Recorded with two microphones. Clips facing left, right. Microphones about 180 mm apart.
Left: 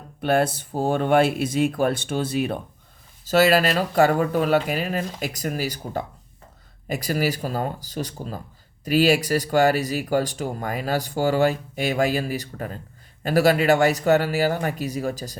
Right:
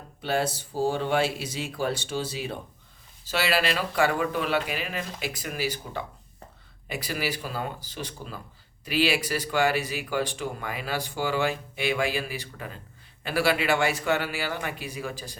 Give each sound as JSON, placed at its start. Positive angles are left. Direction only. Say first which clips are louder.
{"t": 0.2, "sound": "speech", "louder": "left 6 dB", "side_deg": 55}
{"t": 3.2, "sound": "speech", "louder": "left 8 dB", "side_deg": 45}